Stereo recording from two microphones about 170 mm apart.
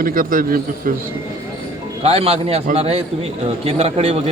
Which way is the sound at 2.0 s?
35° right (ahead or behind).